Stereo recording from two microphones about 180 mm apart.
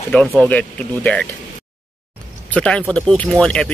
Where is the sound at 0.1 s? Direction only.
5° left (ahead or behind).